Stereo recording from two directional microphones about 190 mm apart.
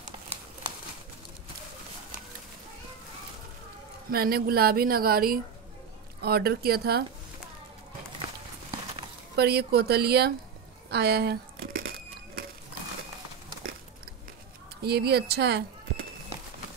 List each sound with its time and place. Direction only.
4.1 s speech: 55° right (ahead or behind)
9.4 s speech: 55° right (ahead or behind)
10.9 s crumpling: 60° right (ahead or behind)
14.8 s speech: 55° right (ahead or behind)